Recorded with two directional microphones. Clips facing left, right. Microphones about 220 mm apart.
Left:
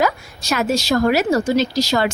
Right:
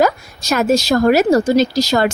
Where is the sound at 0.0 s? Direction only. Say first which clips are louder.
Right 4 dB; 45° right (ahead or behind).